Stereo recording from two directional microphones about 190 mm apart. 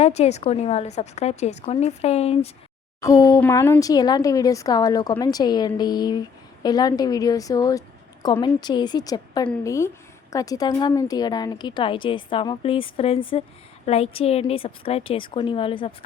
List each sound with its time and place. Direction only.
0.0 s a woman's voice: 35° left (ahead or behind)
3.0 s a woman's voice: 15° left (ahead or behind)